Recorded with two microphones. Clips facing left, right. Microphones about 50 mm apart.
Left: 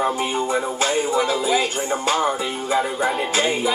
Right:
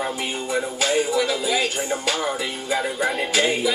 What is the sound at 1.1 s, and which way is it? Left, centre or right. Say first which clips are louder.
Speech: left 2 dB; left.